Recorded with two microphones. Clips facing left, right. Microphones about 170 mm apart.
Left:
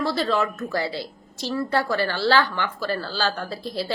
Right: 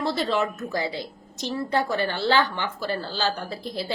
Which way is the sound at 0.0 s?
20° right (ahead or behind).